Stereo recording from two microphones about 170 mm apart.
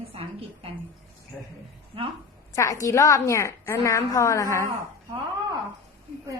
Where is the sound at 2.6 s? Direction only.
20° left (ahead or behind).